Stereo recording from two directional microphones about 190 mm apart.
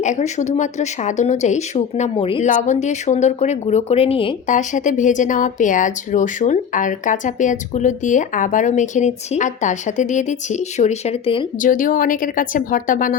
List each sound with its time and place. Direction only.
0.0 s speech: 40° left (ahead or behind)
4.4 s speech: 40° left (ahead or behind)
11.6 s a woman's voice: 45° left (ahead or behind)